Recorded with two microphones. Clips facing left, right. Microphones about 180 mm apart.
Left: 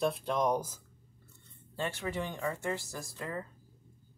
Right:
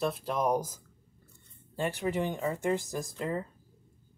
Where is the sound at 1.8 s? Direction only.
15° right (ahead or behind).